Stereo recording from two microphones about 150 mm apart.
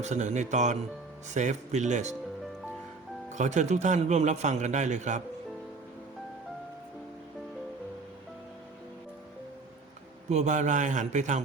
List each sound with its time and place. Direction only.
0.0 s speech: 50° right (ahead or behind)
3.3 s speech: 55° right (ahead or behind)
10.2 s speech: 50° right (ahead or behind)